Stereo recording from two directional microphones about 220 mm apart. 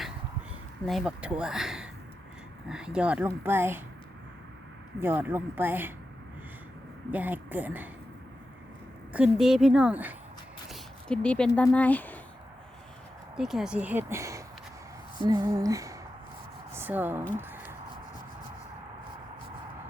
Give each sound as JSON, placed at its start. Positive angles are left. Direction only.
{"t": 0.9, "sound": "speech", "side_deg": 0}
{"t": 4.9, "sound": "speech", "side_deg": -10}
{"t": 7.1, "sound": "speech", "side_deg": -10}
{"t": 9.1, "sound": "speech", "side_deg": -5}
{"t": 13.3, "sound": "a woman's voice", "side_deg": 0}
{"t": 17.3, "sound": "a sound", "side_deg": -10}